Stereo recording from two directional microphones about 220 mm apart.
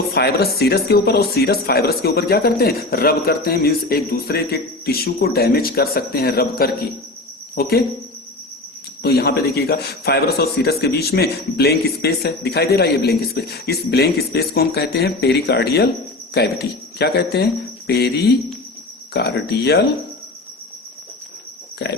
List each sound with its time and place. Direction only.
0.1 s a man's voice: 45° left (ahead or behind)
9.0 s a man's voice: 45° left (ahead or behind)
21.8 s a man's voice: 50° left (ahead or behind)